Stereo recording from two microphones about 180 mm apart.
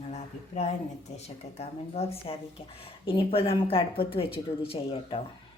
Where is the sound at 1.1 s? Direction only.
35° left (ahead or behind).